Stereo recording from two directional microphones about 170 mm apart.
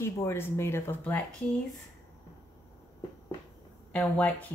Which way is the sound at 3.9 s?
10° left (ahead or behind).